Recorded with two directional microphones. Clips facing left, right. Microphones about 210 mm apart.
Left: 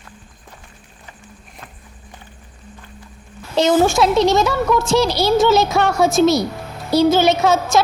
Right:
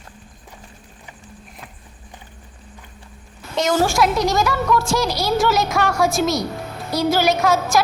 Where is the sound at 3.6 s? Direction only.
25° left (ahead or behind).